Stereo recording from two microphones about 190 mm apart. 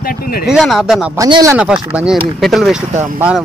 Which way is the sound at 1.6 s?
5° right (ahead or behind).